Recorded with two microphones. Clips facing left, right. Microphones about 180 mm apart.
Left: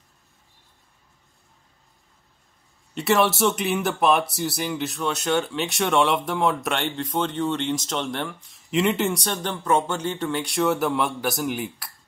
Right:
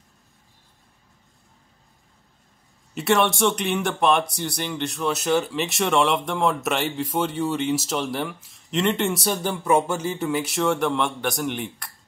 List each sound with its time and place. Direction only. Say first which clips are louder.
2.9 s a man's voice: even; centre (ahead or behind)